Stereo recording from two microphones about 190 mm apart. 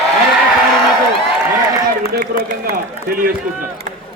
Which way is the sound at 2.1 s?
45° right (ahead or behind).